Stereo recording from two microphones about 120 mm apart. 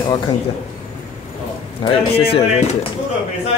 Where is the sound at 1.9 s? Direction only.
55° left (ahead or behind).